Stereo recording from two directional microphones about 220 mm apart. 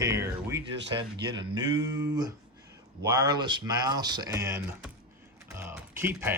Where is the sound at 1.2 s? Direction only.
20° right (ahead or behind).